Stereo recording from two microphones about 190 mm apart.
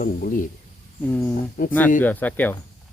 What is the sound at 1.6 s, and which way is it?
Speech, 45° left (ahead or behind).